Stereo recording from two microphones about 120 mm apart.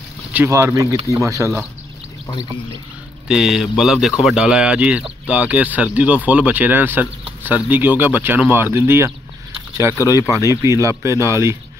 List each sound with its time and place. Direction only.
0.5 s speech: 25° right (ahead or behind)
3.3 s speech: 5° right (ahead or behind); by 11.5 s 25° right (ahead or behind)